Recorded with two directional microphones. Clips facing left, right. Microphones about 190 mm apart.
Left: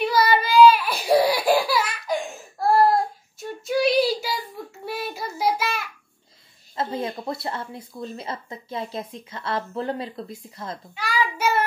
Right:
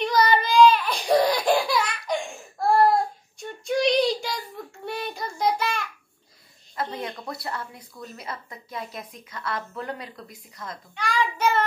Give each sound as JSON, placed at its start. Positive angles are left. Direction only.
{"t": 0.0, "sound": "baby cry", "side_deg": 5}
{"t": 2.7, "sound": "child singing", "side_deg": 5}
{"t": 6.8, "sound": "speech", "side_deg": 25}
{"t": 11.0, "sound": "child singing", "side_deg": 5}